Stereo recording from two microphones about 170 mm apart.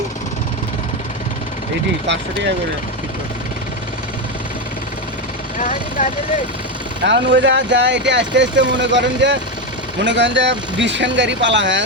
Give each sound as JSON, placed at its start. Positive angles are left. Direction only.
{"t": 5.5, "sound": "speech", "side_deg": 50}
{"t": 7.0, "sound": "speech", "side_deg": -90}